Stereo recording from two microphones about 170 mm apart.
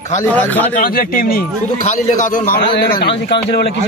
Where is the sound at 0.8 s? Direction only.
60° left (ahead or behind).